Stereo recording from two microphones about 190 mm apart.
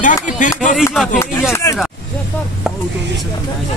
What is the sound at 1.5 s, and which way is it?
Speech, 15° left (ahead or behind).